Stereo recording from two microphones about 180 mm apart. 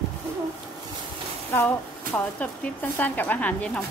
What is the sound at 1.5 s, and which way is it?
Speech, 10° left (ahead or behind).